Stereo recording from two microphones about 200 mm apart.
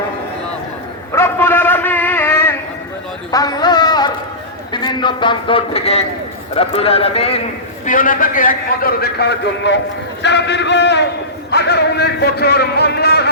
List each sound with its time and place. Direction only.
1.1 s a sound: 10° left (ahead or behind)
4.7 s a man's voice: 20° left (ahead or behind)
7.9 s a man's voice: 45° left (ahead or behind)